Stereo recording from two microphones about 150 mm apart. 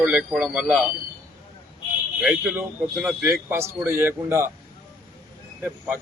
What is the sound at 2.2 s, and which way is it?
Speech, 5° right (ahead or behind).